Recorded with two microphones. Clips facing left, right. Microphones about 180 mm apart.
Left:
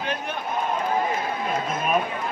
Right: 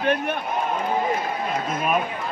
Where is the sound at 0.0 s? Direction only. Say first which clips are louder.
Right 7 dB; 60° right (ahead or behind).